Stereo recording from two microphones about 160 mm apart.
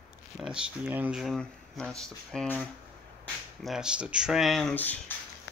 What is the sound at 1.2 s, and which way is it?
Speech, centre (ahead or behind).